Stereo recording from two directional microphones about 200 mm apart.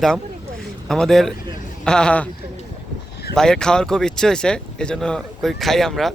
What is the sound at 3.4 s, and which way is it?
Speech, 5° left (ahead or behind).